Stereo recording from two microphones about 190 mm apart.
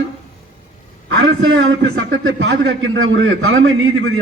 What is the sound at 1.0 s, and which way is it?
A man's voice, 80° right.